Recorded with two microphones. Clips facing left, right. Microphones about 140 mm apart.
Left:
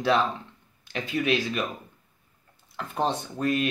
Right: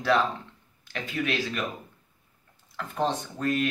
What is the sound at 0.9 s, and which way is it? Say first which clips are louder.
Speech: left 4 dB; 20° left (ahead or behind).